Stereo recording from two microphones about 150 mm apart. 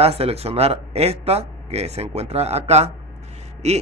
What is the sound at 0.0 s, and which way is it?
Speech, 40° right (ahead or behind).